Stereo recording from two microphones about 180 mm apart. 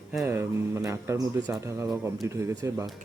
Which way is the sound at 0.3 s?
15° right (ahead or behind).